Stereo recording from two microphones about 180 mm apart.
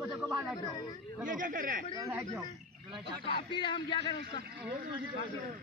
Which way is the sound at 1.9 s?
15° right (ahead or behind).